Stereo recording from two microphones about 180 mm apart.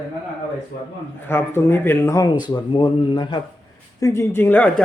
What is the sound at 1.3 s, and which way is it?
Speech, 15° left (ahead or behind).